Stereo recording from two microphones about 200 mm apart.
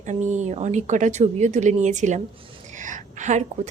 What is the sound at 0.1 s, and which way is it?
A woman's voice, 35° right (ahead or behind).